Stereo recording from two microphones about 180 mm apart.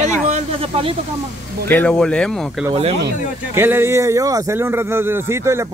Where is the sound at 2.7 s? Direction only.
35° right (ahead or behind).